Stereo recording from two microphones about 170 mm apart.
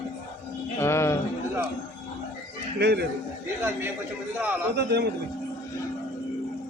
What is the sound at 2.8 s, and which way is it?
Speech, 75° right (ahead or behind).